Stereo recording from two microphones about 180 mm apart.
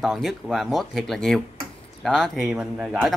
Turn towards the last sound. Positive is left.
turn(degrees=0)  # may be behind; listen again after turning